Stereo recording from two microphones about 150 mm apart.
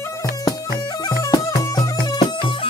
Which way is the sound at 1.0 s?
25° left (ahead or behind).